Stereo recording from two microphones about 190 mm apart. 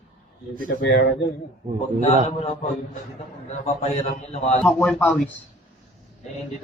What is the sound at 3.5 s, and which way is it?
A man's voice, 35° left (ahead or behind).